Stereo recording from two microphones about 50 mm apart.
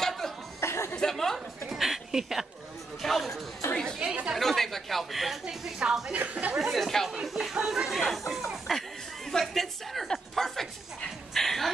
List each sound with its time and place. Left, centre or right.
0.6 s chuckle: left
0.9 s speech: centre
1.7 s a woman's voice: centre
3.6 s a woman's voice: left
4.0 s speech: right
4.4 s a woman's voice: centre
11.3 s a sound: centre